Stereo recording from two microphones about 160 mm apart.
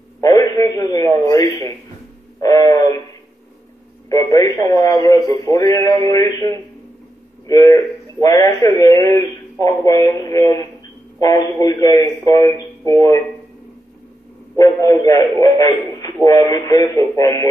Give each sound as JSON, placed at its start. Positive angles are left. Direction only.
{"t": 0.2, "sound": "a sound", "side_deg": 20}
{"t": 4.1, "sound": "a man's voice", "side_deg": 20}
{"t": 14.6, "sound": "a man's voice", "side_deg": 20}